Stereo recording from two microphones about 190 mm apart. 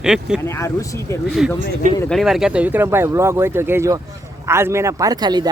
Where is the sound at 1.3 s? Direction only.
Centre (ahead or behind).